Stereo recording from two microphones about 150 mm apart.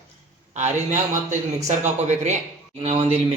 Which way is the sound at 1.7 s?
50° right (ahead or behind).